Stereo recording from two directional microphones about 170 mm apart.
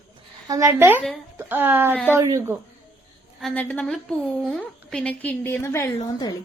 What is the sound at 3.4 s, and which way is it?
A woman's voice, 5° left (ahead or behind).